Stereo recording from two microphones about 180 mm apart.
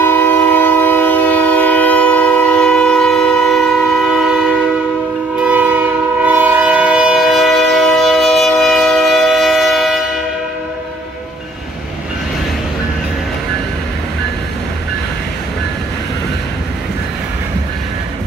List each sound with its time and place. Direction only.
0.0 s train: 10° left (ahead or behind)